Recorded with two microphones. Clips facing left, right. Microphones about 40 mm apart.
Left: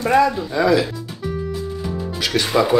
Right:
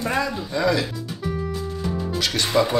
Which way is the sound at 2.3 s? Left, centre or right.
Centre.